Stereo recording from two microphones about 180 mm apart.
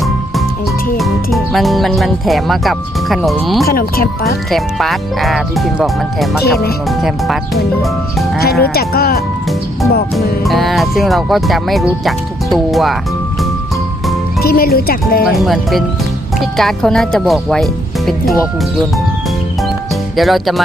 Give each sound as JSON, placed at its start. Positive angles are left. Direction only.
{"t": 0.9, "sound": "speech", "side_deg": 0}
{"t": 3.7, "sound": "speech", "side_deg": 55}
{"t": 4.5, "sound": "speech", "side_deg": 0}
{"t": 8.4, "sound": "speech", "side_deg": 60}
{"t": 10.2, "sound": "speech", "side_deg": 0}
{"t": 14.4, "sound": "speech", "side_deg": 55}
{"t": 15.3, "sound": "speech", "side_deg": 0}
{"t": 20.1, "sound": "speech", "side_deg": 0}